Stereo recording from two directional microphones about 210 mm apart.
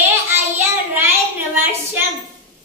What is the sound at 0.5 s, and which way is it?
Child singing, 10° right (ahead or behind).